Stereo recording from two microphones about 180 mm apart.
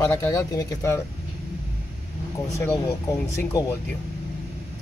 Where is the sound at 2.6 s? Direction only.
15° left (ahead or behind).